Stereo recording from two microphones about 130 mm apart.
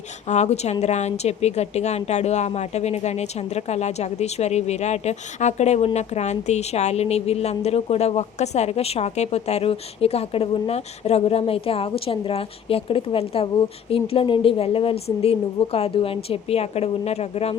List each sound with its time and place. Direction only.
0.3 s a woman's voice: 60° left (ahead or behind)